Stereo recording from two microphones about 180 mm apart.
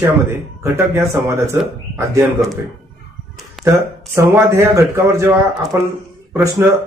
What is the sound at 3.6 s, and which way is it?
Speech, 15° right (ahead or behind).